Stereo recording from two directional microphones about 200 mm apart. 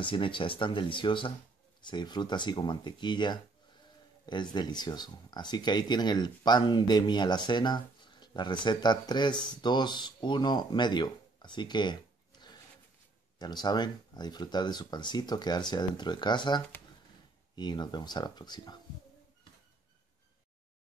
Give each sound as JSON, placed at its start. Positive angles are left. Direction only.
{"t": 0.0, "sound": "speech", "side_deg": 25}